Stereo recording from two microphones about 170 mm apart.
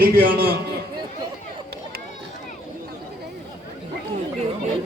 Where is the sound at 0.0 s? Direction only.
60° right (ahead or behind).